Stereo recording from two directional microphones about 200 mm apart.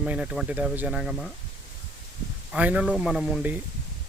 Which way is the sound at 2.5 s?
5° right (ahead or behind).